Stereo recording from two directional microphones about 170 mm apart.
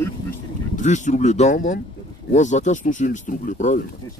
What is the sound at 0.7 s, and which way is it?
Speech, 45° left (ahead or behind).